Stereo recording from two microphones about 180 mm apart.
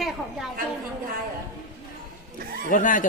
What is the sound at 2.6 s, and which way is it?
Speech, 45° left (ahead or behind).